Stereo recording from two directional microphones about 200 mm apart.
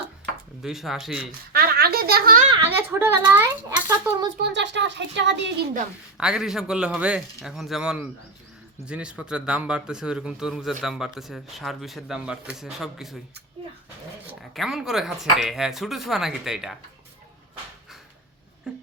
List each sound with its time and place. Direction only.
0.6 s speech: centre (ahead or behind)
1.5 s giggle: 50° right (ahead or behind)
2.6 s a child's voice: 10° right (ahead or behind)
4.5 s speech: 60° right (ahead or behind)
6.1 s speech: 5° right (ahead or behind)
14.5 s speech: centre (ahead or behind)